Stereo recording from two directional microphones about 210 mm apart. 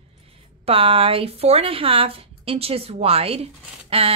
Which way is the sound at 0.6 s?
25° right (ahead or behind).